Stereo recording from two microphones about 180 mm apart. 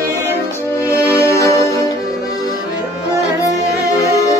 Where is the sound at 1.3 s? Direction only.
15° left (ahead or behind).